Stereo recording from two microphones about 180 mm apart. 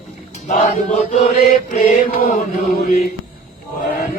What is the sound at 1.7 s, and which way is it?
Choir, 50° left (ahead or behind).